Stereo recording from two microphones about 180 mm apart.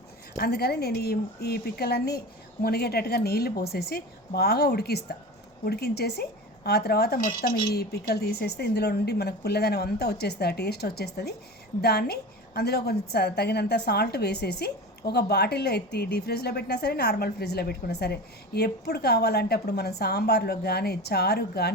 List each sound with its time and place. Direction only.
0.3 s a woman's voice: 60° left (ahead or behind)
7.2 s a woman's voice: 50° left (ahead or behind)